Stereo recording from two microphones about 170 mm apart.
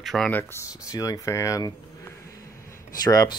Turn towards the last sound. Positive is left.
turn(degrees=20)  # may be behind; listen again after turning